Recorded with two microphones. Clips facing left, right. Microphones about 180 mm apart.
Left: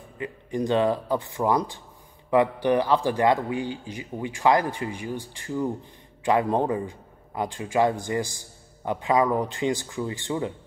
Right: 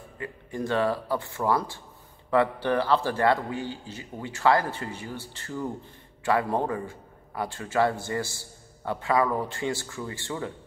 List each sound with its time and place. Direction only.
0.2 s a man's voice: 20° left (ahead or behind)